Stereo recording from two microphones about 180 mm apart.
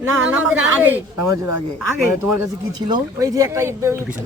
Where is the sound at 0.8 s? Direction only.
10° right (ahead or behind).